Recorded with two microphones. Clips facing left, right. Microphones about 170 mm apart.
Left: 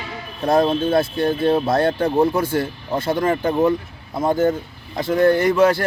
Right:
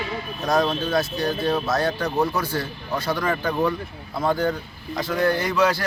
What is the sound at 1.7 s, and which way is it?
Speech, 55° left (ahead or behind).